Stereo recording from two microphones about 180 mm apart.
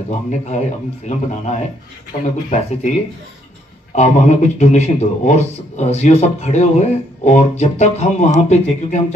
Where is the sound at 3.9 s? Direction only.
40° left (ahead or behind).